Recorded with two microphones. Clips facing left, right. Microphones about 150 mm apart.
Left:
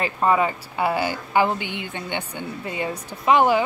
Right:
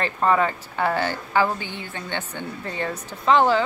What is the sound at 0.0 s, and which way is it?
A woman's voice, 10° left (ahead or behind).